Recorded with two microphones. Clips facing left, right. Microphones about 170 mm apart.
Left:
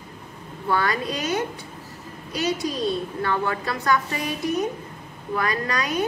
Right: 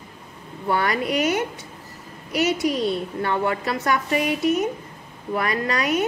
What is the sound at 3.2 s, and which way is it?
A woman's voice, 25° right (ahead or behind).